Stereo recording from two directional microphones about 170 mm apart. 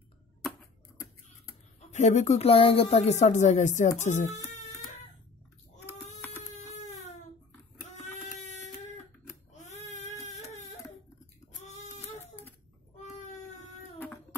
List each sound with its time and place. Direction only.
1.9 s speech: 45° left (ahead or behind)
6.6 s baby cry: 45° left (ahead or behind)
9.7 s baby cry: 40° left (ahead or behind)
11.6 s a sound: 40° left (ahead or behind)